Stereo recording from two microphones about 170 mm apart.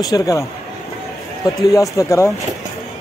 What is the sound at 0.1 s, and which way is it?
Speech, 20° left (ahead or behind).